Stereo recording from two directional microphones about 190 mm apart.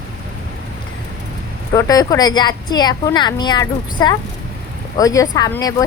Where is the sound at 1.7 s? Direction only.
15° left (ahead or behind).